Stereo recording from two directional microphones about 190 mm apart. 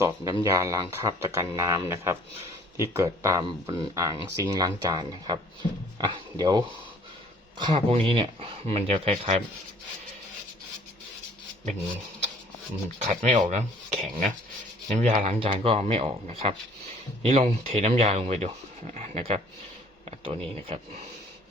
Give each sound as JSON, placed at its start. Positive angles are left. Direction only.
{"t": 0.4, "sound": "speech", "side_deg": -15}
{"t": 13.0, "sound": "speech", "side_deg": -40}